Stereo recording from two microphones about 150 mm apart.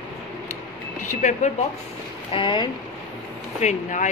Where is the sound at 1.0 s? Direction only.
55° left (ahead or behind).